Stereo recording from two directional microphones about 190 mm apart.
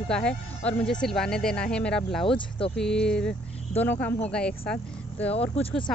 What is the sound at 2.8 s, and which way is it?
Speech, 5° left (ahead or behind).